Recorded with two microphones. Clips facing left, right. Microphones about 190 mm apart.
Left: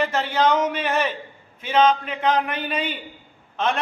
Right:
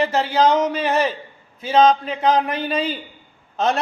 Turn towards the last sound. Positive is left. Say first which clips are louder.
# right 3 dB
turn(degrees=-40)  # may be behind; listen again after turning